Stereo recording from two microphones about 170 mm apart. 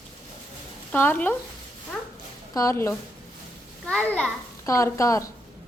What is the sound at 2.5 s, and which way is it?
A woman's voice, 15° left (ahead or behind).